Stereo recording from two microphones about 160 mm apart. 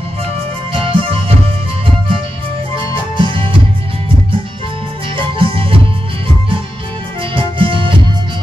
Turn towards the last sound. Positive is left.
turn(degrees=-30)  # may be behind; listen again after turning